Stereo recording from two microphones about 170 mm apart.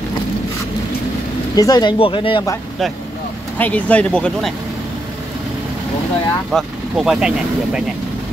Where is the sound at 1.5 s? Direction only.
25° left (ahead or behind).